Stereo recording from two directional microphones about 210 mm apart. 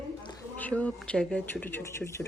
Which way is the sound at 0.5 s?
5° left (ahead or behind).